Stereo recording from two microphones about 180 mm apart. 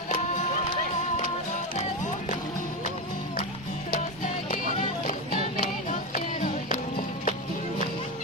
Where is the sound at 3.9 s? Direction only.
50° left (ahead or behind).